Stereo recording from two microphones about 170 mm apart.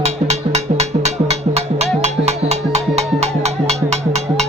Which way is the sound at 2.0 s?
40° right (ahead or behind).